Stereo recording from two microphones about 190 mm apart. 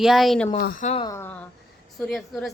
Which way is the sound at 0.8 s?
30° left (ahead or behind).